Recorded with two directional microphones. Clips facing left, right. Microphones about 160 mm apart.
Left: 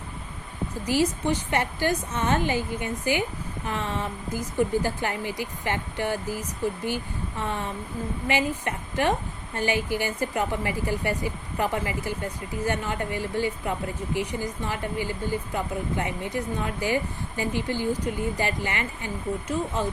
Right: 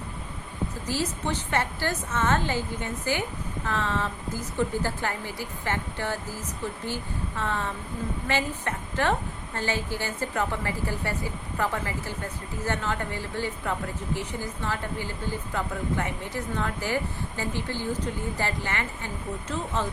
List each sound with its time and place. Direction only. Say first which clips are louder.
0.9 s a woman's voice: left 6 dB; 10° left (ahead or behind)